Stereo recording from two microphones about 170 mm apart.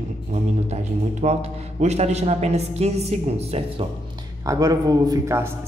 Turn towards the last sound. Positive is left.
turn(degrees=-20)  # may be behind; listen again after turning